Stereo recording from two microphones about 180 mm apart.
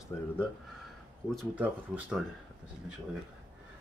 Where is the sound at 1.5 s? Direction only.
5° right (ahead or behind).